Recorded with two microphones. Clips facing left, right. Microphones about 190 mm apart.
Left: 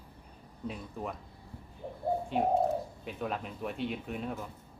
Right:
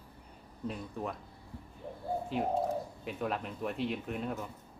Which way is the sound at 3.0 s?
Centre (ahead or behind).